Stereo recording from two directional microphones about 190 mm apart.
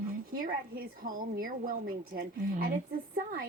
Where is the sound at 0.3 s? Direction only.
50° right (ahead or behind).